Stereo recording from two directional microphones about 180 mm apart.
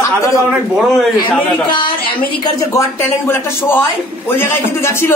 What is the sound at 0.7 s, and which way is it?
Speech, centre (ahead or behind).